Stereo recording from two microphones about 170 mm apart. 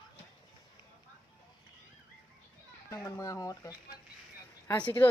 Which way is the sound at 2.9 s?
20° left (ahead or behind).